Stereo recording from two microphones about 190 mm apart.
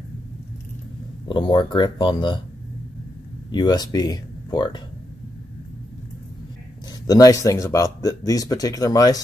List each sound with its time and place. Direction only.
1.3 s speech: 25° left (ahead or behind)
3.5 s speech: 20° left (ahead or behind)
7.1 s speech: 20° left (ahead or behind)